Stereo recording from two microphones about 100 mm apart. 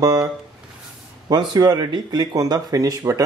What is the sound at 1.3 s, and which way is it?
Speech, 40° right (ahead or behind).